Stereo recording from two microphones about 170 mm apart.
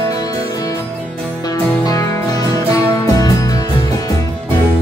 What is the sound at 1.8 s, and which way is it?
Music, 20° left (ahead or behind).